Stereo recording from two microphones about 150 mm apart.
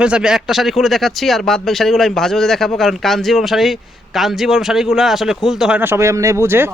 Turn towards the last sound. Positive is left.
turn(degrees=-15)  # may be behind; listen again after turning